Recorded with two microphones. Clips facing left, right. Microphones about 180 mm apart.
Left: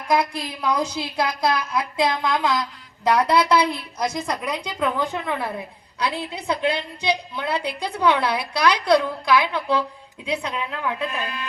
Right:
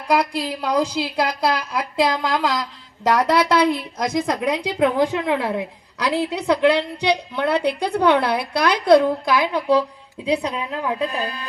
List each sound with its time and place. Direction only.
0.2 s a woman's voice: 35° right (ahead or behind)
3.1 s a woman's voice: 45° right (ahead or behind)